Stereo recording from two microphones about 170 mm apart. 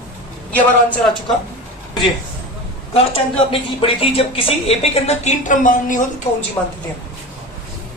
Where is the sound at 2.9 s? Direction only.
30° left (ahead or behind); by 6.1 s 50° left (ahead or behind).